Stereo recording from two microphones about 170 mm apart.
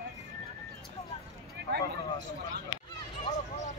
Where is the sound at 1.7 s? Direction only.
75° right (ahead or behind).